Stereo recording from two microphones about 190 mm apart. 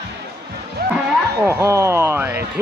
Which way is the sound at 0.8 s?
55° right (ahead or behind).